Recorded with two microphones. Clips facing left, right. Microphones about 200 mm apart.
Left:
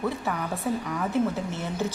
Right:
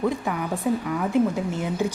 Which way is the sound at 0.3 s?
10° right (ahead or behind).